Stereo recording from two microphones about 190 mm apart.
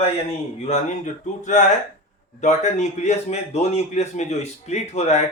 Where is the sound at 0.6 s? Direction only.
40° left (ahead or behind).